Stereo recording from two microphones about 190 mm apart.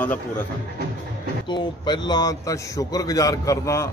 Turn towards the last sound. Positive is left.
turn(degrees=15)  # may be behind; listen again after turning